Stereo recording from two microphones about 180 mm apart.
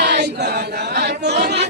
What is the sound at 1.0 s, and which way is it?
Chatter, 70° right (ahead or behind).